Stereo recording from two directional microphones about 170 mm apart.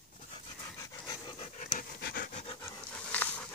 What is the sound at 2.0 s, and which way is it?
Pant, 60° left (ahead or behind).